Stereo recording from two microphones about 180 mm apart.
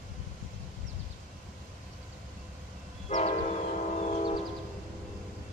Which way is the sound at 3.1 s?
40° left (ahead or behind).